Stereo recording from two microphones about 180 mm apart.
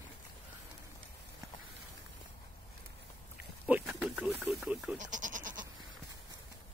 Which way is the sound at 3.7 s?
10° right (ahead or behind).